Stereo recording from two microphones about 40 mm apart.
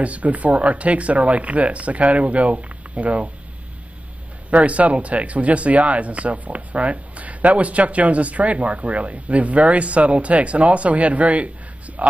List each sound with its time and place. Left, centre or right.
0.0 s speech: right
4.5 s speech: right